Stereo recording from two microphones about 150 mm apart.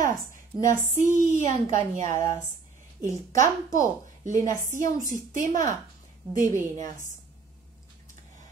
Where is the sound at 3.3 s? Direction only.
60° right (ahead or behind).